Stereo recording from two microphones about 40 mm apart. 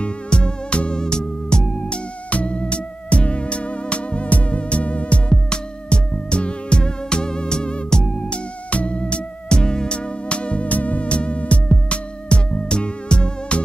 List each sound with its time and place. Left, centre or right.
0.0 s music: left
8.6 s music: left